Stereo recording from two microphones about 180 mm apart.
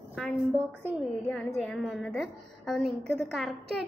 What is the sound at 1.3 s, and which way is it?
A woman's voice, 5° left (ahead or behind).